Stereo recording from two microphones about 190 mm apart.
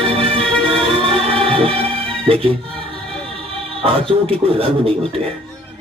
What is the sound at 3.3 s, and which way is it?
A man's voice, 30° right (ahead or behind).